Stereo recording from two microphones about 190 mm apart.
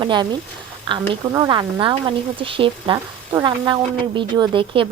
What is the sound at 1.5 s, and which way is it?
A woman's voice, 25° right (ahead or behind).